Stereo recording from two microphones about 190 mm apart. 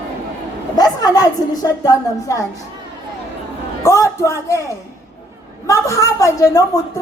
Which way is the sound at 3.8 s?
15° left (ahead or behind).